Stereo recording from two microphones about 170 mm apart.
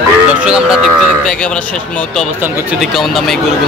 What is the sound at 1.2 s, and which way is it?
Moo, 5° left (ahead or behind).